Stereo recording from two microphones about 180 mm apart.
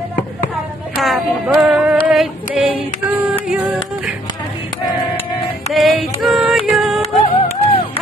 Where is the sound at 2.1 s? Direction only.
5° right (ahead or behind).